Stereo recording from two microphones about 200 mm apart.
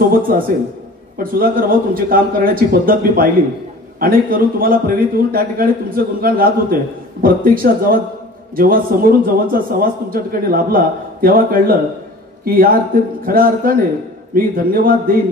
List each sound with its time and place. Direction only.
0.0 s a man's voice: 45° right (ahead or behind)